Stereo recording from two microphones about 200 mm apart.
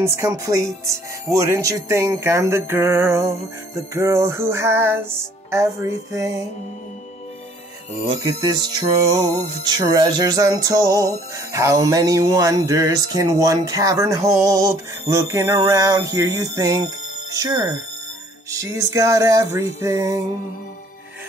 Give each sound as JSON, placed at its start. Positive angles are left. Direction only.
{"t": 0.0, "sound": "music", "side_deg": -15}
{"t": 8.5, "sound": "music", "side_deg": -20}